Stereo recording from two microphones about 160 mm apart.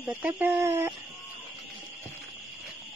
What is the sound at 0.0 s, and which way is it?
Speech, 15° right (ahead or behind).